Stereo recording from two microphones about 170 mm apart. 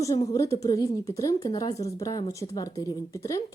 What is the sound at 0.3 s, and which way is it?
A woman's voice, 20° left (ahead or behind).